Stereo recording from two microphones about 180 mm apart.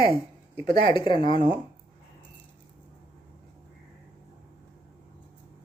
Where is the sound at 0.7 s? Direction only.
25° left (ahead or behind).